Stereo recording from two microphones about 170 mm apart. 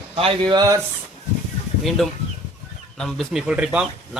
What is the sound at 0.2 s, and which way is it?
Speech, 30° right (ahead or behind).